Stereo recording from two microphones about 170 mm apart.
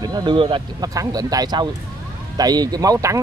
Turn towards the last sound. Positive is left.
turn(degrees=-20)  # may be behind; listen again after turning